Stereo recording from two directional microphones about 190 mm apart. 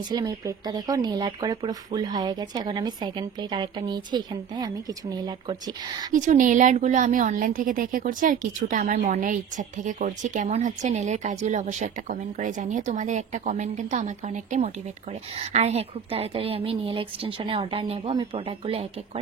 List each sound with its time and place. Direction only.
0.1 s speech: 20° right (ahead or behind)
6.1 s a woman's voice: 40° right (ahead or behind)